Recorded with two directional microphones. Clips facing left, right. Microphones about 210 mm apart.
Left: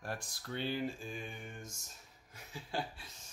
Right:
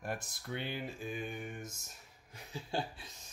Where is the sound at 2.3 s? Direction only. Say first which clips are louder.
Right 3 dB; 25° right (ahead or behind).